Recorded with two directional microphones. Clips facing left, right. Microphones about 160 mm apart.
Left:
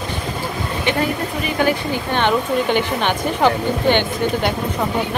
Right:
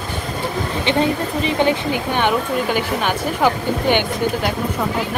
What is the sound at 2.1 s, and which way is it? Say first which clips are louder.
Speech: left 3 dB; 10° right (ahead or behind).